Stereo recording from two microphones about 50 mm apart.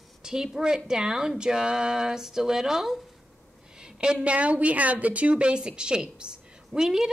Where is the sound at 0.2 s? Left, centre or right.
Centre.